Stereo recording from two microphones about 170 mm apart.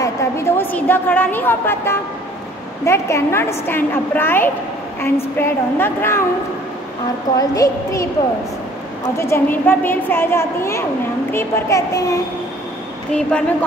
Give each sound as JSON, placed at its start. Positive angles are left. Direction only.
{"t": 0.0, "sound": "a sound", "side_deg": 15}
{"t": 2.8, "sound": "a woman's voice", "side_deg": 15}
{"t": 7.3, "sound": "a woman's voice", "side_deg": 20}
{"t": 13.1, "sound": "a woman's voice", "side_deg": 5}